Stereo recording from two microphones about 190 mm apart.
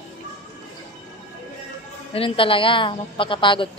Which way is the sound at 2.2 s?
30° left (ahead or behind).